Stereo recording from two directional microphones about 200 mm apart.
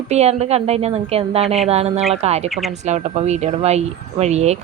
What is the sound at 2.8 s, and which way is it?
A woman's voice, 35° right (ahead or behind).